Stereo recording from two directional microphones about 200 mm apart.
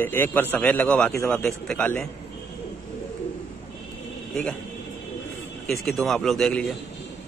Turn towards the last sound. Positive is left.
turn(degrees=5)  # may be behind; listen again after turning